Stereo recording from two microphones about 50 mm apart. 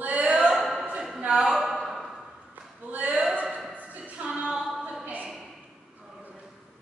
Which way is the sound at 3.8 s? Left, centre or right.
Right.